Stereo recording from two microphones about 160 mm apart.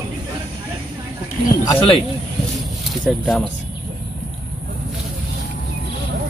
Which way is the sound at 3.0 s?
Centre (ahead or behind).